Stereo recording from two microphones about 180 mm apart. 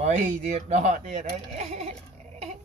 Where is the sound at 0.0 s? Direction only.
35° right (ahead or behind).